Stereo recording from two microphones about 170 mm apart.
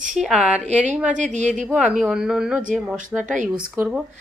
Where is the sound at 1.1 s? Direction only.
45° right (ahead or behind).